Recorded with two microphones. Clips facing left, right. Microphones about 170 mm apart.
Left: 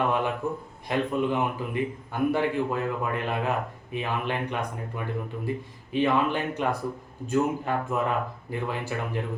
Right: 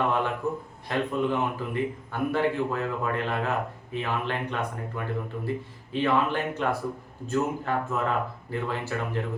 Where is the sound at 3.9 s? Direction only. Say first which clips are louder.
Left 1 dB; 15° left (ahead or behind).